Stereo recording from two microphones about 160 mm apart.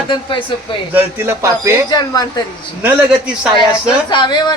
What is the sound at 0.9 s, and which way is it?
Speech, 15° right (ahead or behind).